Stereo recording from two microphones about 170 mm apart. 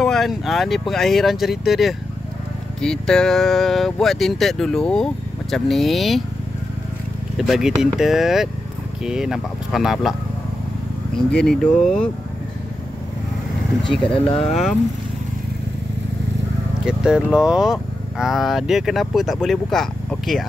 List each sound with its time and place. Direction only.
0.0 s speech: centre (ahead or behind)
7.3 s speech: centre (ahead or behind)
11.4 s speech: 5° left (ahead or behind)
13.8 s speech: 5° left (ahead or behind)
14.1 s speech: 30° left (ahead or behind)
14.4 s speech: centre (ahead or behind)
16.8 s speech: 5° right (ahead or behind)